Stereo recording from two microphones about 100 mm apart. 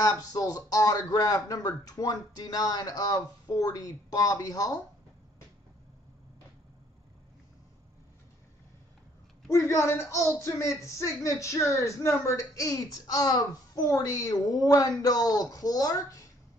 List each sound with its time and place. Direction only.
0.0 s speech: 35° left (ahead or behind)
9.5 s speech: 30° left (ahead or behind)